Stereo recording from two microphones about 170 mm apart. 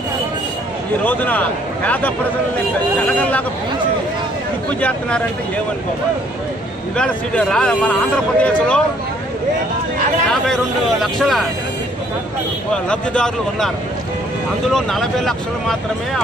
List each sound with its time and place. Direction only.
1.0 s speech: 10° left (ahead or behind)
4.7 s speech: 10° left (ahead or behind)
7.0 s speech: 5° left (ahead or behind)
10.3 s speech: centre (ahead or behind)
12.7 s speech: 5° left (ahead or behind)
14.7 s speech: centre (ahead or behind)